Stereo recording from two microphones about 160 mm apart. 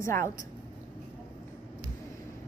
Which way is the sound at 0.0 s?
15° left (ahead or behind).